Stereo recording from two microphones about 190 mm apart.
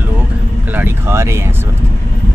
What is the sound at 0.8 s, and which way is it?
Speech, 15° right (ahead or behind).